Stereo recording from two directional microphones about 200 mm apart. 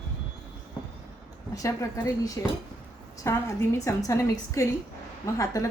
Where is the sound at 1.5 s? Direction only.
15° left (ahead or behind).